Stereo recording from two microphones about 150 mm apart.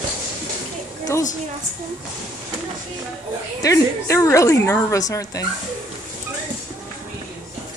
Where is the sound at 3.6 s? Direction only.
20° left (ahead or behind).